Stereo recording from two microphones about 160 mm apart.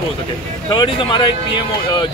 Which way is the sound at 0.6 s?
30° left (ahead or behind).